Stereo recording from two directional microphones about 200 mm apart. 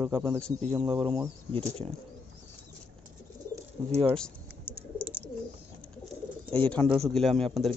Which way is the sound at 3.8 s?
20° right (ahead or behind).